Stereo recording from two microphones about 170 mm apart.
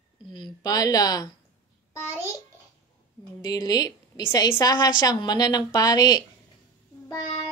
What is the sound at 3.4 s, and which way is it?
Speech, 25° left (ahead or behind).